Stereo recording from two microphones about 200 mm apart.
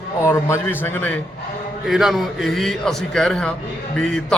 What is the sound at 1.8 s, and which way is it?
A man's voice, centre (ahead or behind).